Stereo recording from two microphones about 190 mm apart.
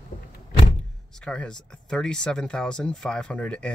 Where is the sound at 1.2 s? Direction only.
5° left (ahead or behind).